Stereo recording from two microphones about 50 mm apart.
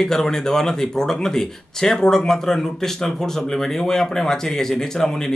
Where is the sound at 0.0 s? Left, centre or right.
Centre.